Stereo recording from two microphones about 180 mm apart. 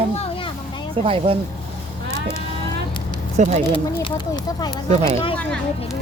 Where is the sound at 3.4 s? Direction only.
40° right (ahead or behind).